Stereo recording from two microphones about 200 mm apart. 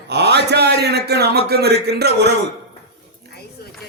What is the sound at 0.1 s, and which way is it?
A man's voice, 55° right (ahead or behind).